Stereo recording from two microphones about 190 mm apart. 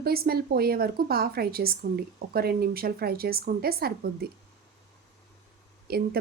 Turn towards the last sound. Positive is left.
turn(degrees=-55)  # may be behind; listen again after turning